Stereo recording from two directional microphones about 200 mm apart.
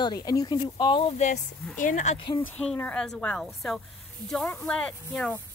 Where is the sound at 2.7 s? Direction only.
5° left (ahead or behind).